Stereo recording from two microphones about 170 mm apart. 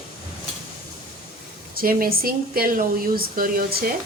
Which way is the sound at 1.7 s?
60° right (ahead or behind).